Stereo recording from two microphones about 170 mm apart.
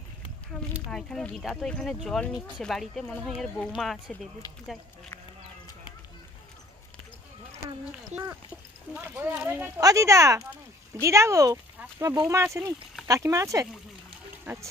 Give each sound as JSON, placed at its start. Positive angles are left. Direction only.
{"t": 0.7, "sound": "speech", "side_deg": 0}
{"t": 8.2, "sound": "speech", "side_deg": -10}
{"t": 13.7, "sound": "a sound", "side_deg": -10}